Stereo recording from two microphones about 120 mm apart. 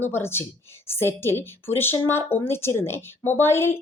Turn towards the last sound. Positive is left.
turn(degrees=20)  # may be behind; listen again after turning